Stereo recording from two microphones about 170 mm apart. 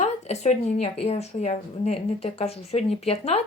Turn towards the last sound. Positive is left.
turn(degrees=40)  # may be behind; listen again after turning